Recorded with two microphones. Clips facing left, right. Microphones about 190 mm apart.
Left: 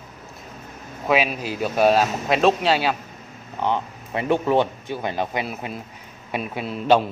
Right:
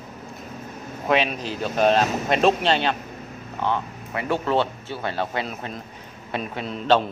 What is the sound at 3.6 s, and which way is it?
Speech, 15° left (ahead or behind).